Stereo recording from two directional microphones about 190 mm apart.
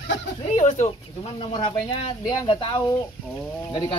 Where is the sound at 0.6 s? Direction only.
35° left (ahead or behind).